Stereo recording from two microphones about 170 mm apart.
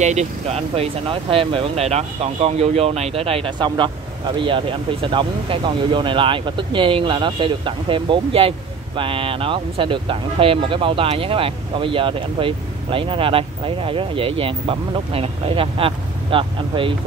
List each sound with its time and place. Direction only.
0.0 s speech: 45° right (ahead or behind)